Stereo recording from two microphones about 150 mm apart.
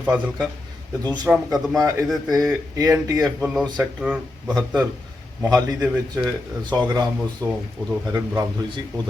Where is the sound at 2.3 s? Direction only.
25° right (ahead or behind).